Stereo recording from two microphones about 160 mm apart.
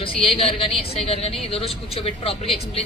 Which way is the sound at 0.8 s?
40° left (ahead or behind).